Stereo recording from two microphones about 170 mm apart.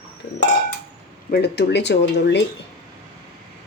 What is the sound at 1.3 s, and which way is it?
Speech, 75° left (ahead or behind).